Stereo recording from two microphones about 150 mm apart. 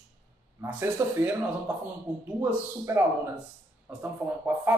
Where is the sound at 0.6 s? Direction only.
10° right (ahead or behind).